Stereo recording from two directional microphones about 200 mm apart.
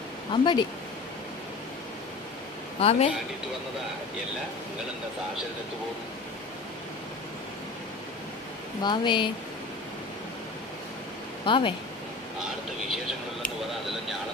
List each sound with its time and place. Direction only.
0.3 s speech: 20° left (ahead or behind)
2.8 s speech: 30° left (ahead or behind)
8.8 s speech: 25° left (ahead or behind)
11.4 s speech: 25° left (ahead or behind)